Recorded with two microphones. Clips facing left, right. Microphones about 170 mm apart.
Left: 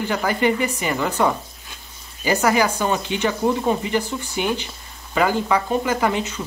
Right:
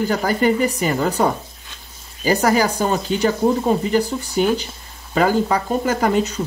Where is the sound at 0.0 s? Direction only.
40° right (ahead or behind).